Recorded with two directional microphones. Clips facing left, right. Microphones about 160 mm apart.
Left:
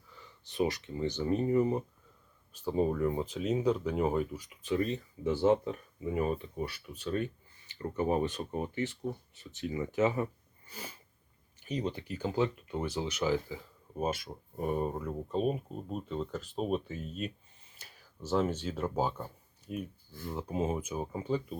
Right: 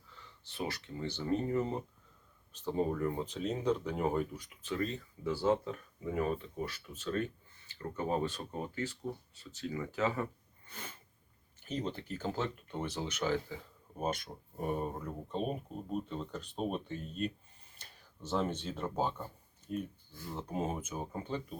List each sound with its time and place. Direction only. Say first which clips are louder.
0.2 s speech: left 9 dB; 15° left (ahead or behind)
7.7 s speech: left 4 dB; 20° left (ahead or behind)
10.7 s sneeze: left 3 dB; 5° left (ahead or behind)
11.7 s speech: left 3 dB; 15° left (ahead or behind)
14.6 s speech: left 4 dB; centre (ahead or behind)